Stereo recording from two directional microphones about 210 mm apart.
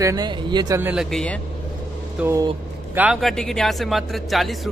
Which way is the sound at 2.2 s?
15° right (ahead or behind).